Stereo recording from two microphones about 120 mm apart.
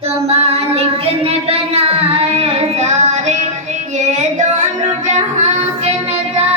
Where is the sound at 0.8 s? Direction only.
55° right (ahead or behind).